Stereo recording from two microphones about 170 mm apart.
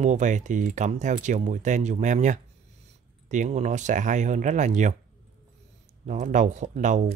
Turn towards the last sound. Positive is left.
turn(degrees=-45)  # may be behind; listen again after turning